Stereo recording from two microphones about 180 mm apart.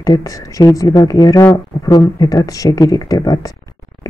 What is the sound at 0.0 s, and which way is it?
Speech, 20° left (ahead or behind).